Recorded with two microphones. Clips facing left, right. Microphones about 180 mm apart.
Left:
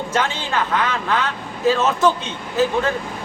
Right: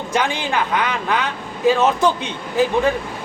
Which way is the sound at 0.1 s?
15° right (ahead or behind).